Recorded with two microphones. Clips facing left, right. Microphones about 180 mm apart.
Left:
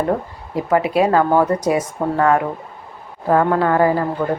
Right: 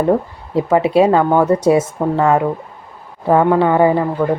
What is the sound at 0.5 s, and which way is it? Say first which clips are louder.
Speech: right 4 dB; 25° right (ahead or behind).